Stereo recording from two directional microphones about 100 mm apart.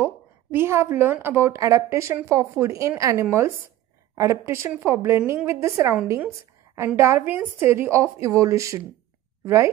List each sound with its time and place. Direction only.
0.0 s a woman's voice: 20° right (ahead or behind)
7.0 s a woman's voice: 25° right (ahead or behind)